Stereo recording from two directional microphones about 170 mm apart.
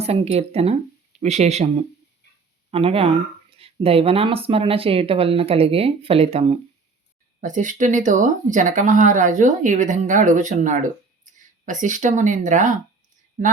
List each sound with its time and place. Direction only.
0.0 s speech: 35° right (ahead or behind)
7.4 s speech: 50° right (ahead or behind)